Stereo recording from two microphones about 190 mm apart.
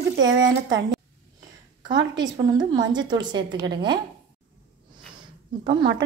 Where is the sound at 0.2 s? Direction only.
75° right (ahead or behind).